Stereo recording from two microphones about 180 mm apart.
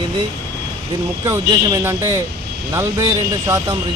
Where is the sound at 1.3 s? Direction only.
15° right (ahead or behind).